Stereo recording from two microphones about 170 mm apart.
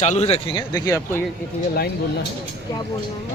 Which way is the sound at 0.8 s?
20° left (ahead or behind).